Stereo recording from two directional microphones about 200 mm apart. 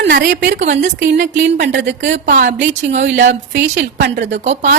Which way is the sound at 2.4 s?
35° right (ahead or behind).